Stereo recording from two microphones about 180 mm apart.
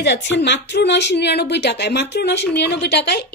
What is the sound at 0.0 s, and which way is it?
Speech, 75° left (ahead or behind).